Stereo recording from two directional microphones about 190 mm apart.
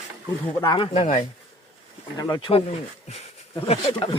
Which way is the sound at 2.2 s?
20° left (ahead or behind).